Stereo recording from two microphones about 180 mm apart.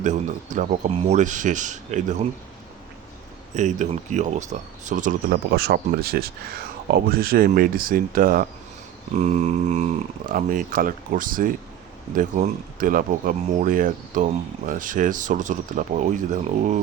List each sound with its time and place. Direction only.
0.0 s speech: 40° right (ahead or behind)
3.5 s speech: 45° right (ahead or behind)
9.1 s speech: 40° right (ahead or behind)